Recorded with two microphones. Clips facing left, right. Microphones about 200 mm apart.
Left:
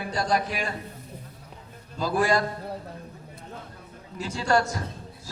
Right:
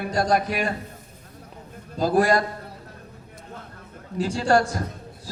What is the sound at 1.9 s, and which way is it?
Speech, 40° right (ahead or behind).